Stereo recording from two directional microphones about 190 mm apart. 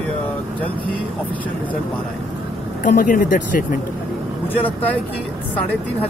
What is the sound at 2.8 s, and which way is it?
Speech, 45° left (ahead or behind).